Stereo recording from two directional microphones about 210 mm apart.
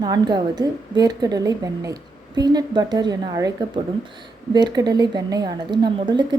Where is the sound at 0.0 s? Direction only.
20° right (ahead or behind).